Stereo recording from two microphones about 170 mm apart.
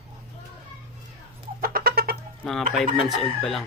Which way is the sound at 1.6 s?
60° right (ahead or behind).